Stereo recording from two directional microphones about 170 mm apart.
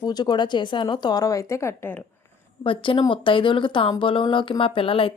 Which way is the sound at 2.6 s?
30° left (ahead or behind).